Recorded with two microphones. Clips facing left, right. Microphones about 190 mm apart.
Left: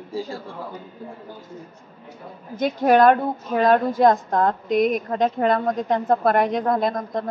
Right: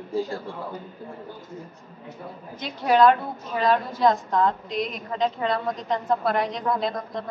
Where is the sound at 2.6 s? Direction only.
50° left (ahead or behind).